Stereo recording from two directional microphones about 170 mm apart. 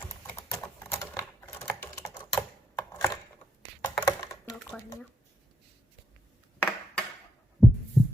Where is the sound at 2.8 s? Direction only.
15° left (ahead or behind).